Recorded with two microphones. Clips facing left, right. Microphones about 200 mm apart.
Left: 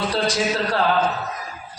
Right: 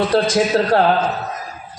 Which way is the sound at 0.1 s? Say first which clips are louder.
Right 6 dB; 50° right (ahead or behind).